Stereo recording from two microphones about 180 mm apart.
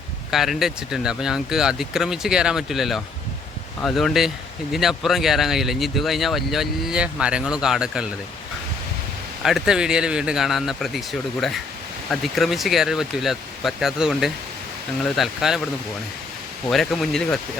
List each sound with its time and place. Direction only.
0.3 s speech: centre (ahead or behind)
9.4 s speech: centre (ahead or behind)
16.6 s speech: centre (ahead or behind)